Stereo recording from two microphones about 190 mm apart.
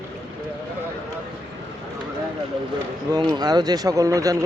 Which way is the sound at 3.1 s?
20° right (ahead or behind).